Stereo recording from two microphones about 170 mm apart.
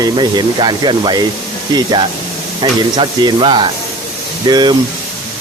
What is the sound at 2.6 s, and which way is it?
Speech, 25° right (ahead or behind).